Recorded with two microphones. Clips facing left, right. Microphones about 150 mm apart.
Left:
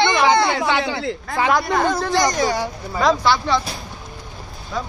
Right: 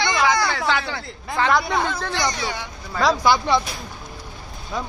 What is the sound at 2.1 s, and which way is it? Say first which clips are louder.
Speech: left 7 dB; 45° left (ahead or behind).